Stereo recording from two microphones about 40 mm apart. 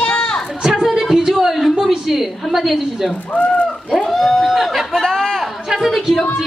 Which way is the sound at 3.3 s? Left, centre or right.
Left.